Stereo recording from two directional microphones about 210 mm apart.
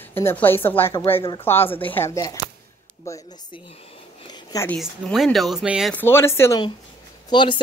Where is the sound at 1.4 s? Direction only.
10° left (ahead or behind).